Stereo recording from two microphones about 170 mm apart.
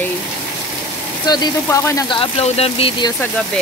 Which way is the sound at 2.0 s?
30° left (ahead or behind).